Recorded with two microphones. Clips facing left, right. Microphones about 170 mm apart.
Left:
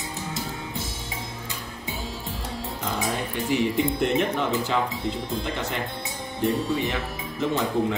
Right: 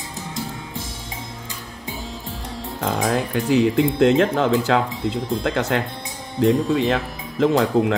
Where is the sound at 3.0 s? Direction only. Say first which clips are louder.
Right 7 dB; 90° right.